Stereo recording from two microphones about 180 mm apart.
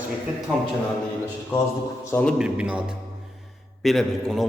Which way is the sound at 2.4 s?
5° right (ahead or behind).